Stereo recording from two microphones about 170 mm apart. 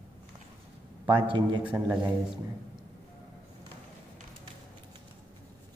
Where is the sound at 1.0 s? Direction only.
30° right (ahead or behind).